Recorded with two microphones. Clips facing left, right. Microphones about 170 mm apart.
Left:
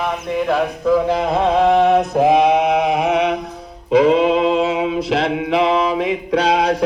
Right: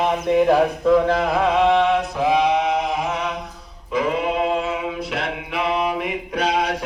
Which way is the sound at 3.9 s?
90° left.